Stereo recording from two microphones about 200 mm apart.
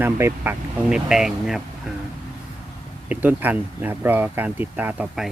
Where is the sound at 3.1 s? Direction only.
10° right (ahead or behind).